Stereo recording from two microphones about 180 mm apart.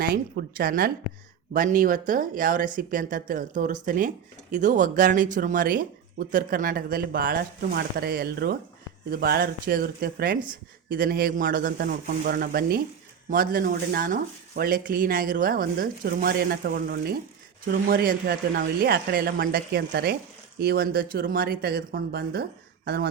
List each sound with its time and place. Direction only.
0.1 s speech: 55° right (ahead or behind)